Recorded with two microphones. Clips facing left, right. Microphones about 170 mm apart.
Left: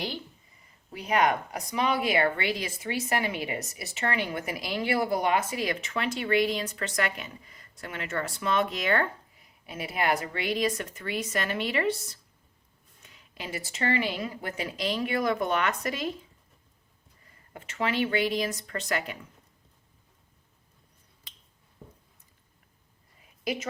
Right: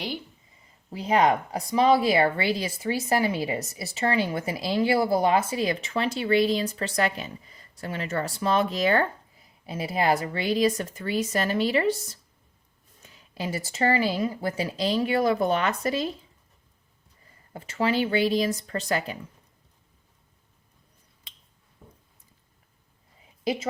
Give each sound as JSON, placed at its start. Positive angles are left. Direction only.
{"t": 0.9, "sound": "a woman's voice", "side_deg": -30}
{"t": 17.5, "sound": "a woman's voice", "side_deg": -35}
{"t": 23.4, "sound": "a woman's voice", "side_deg": -30}